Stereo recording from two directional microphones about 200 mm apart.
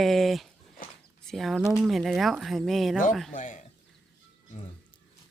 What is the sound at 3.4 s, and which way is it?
Speech, 40° left (ahead or behind).